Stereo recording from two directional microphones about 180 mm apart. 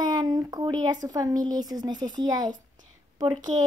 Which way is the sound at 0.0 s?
25° right (ahead or behind).